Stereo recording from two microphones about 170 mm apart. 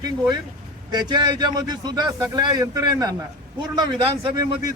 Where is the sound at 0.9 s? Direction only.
25° right (ahead or behind).